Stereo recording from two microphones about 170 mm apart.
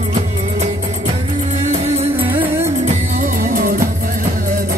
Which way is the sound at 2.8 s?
50° right (ahead or behind).